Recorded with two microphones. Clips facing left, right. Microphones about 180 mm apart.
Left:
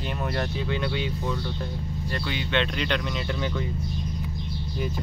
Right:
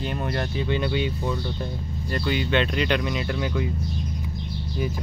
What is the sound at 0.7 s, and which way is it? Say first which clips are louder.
Speech: right 3 dB; centre (ahead or behind).